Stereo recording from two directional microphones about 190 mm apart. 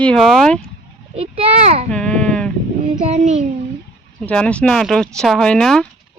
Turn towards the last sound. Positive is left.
turn(degrees=5)  # may be behind; listen again after turning